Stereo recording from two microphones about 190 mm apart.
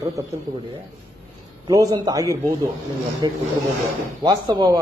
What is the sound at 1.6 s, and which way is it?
A man's voice, 20° right (ahead or behind).